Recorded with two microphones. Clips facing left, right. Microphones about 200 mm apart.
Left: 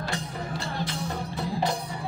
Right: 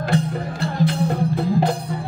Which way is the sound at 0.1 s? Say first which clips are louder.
Right 10 dB; 60° right (ahead or behind).